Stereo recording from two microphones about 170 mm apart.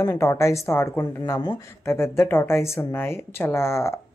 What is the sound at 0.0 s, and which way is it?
Speech, 15° left (ahead or behind).